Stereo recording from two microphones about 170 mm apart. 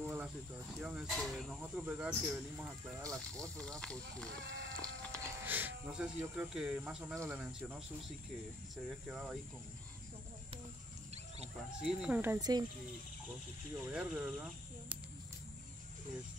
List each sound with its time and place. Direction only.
0.0 s cricket: 10° right (ahead or behind)
0.7 s a sound: 5° right (ahead or behind)
1.0 s speech: 5° left (ahead or behind)
4.8 s music: 15° right (ahead or behind)
7.2 s speech: 10° right (ahead or behind)
8.8 s speech: 5° right (ahead or behind)
11.8 s speech: 5° right (ahead or behind)
12.4 s speech: 25° right (ahead or behind)
13.7 s speech: 10° right (ahead or behind)